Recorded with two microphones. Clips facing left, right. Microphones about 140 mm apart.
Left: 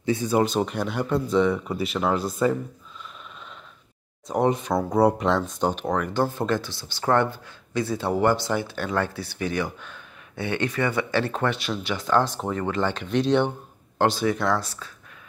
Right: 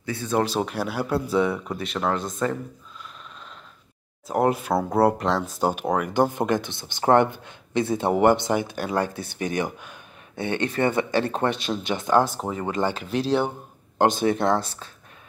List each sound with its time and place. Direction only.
0.0 s speech: 20° left (ahead or behind)
0.3 s speech: centre (ahead or behind)
4.3 s speech: 5° right (ahead or behind)
10.4 s speech: 25° right (ahead or behind); by 13.5 s 5° right (ahead or behind)
13.9 s speech: 20° right (ahead or behind)